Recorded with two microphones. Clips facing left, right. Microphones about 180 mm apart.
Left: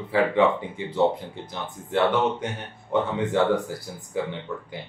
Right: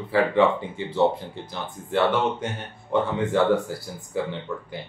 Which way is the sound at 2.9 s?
20° left (ahead or behind).